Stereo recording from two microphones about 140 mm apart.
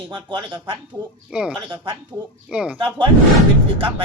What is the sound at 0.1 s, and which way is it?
Speech, 35° right (ahead or behind).